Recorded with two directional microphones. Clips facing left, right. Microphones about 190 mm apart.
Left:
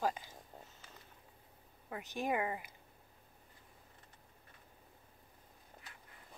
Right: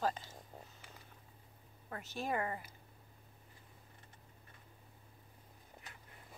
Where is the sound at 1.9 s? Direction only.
15° left (ahead or behind).